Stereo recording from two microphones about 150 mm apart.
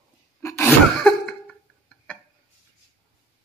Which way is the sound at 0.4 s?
20° left (ahead or behind).